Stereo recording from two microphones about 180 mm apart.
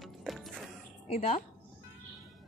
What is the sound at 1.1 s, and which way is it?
Speech, 35° left (ahead or behind).